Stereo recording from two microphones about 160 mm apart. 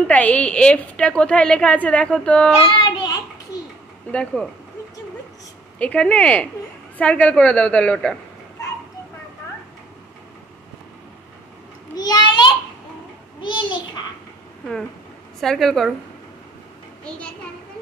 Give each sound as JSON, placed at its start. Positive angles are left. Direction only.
{"t": 0.0, "sound": "a woman's voice", "side_deg": 10}
{"t": 2.8, "sound": "a sound", "side_deg": 25}
{"t": 4.1, "sound": "a woman's voice", "side_deg": 5}
{"t": 5.8, "sound": "a woman's voice", "side_deg": 10}
{"t": 11.9, "sound": "a sound", "side_deg": 25}
{"t": 15.4, "sound": "a woman's voice", "side_deg": 5}